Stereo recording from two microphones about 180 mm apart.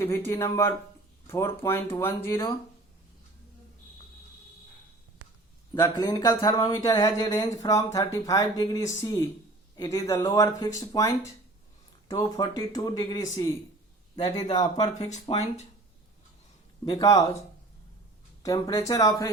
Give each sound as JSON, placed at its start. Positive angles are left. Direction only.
{"t": 0.0, "sound": "speech", "side_deg": 15}
{"t": 5.7, "sound": "speech", "side_deg": 25}
{"t": 15.1, "sound": "speech", "side_deg": 35}
{"t": 16.8, "sound": "speech", "side_deg": 25}
{"t": 18.4, "sound": "speech", "side_deg": 20}